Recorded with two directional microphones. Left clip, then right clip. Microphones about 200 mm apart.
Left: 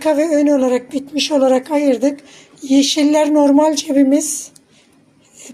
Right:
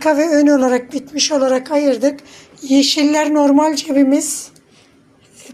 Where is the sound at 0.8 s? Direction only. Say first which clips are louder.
Right 1 dB; 30° left (ahead or behind).